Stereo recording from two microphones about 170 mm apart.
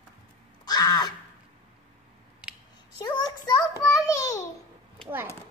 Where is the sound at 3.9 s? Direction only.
20° left (ahead or behind).